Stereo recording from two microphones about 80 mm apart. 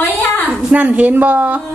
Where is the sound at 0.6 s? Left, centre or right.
Centre.